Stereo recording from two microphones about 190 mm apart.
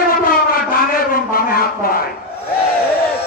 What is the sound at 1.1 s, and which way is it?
Speech, 50° left (ahead or behind).